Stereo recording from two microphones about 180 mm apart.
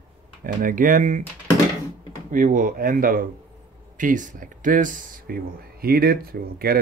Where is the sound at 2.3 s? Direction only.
45° right (ahead or behind).